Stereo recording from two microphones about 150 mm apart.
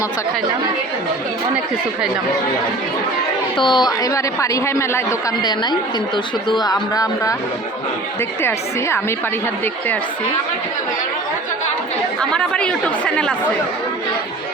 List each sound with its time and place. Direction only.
3.6 s a man's voice: 30° left (ahead or behind)
8.4 s speech: 15° left (ahead or behind)
12.3 s speech: 5° left (ahead or behind)